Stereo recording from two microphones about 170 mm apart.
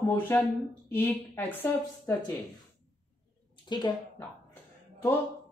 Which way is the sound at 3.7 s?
25° left (ahead or behind).